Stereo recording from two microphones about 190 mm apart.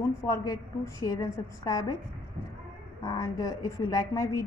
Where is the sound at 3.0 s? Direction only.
20° left (ahead or behind).